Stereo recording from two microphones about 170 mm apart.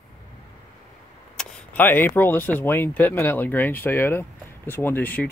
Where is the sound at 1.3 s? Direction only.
5° left (ahead or behind).